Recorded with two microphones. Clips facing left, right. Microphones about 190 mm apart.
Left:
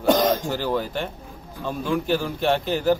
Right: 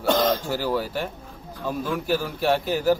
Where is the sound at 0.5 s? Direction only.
10° right (ahead or behind).